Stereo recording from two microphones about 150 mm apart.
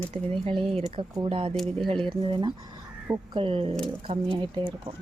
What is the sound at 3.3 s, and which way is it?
Speech, 35° right (ahead or behind).